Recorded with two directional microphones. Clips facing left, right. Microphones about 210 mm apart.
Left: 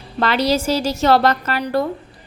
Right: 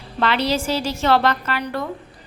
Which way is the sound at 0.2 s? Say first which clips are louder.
Left 3 dB; 40° left (ahead or behind).